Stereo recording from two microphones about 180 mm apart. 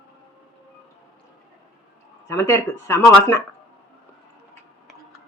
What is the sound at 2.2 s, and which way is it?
Speech, 15° left (ahead or behind).